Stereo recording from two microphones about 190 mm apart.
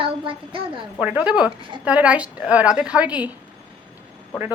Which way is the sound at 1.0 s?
5° right (ahead or behind).